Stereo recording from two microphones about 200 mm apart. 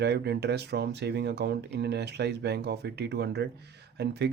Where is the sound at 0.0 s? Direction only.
55° right (ahead or behind).